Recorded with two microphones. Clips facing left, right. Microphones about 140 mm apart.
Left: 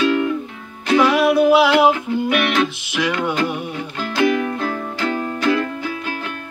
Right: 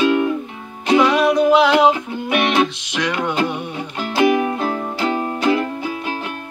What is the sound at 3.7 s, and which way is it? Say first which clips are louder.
Music: even; 25° right (ahead or behind).